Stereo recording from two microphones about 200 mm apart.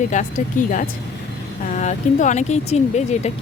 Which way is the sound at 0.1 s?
40° left (ahead or behind).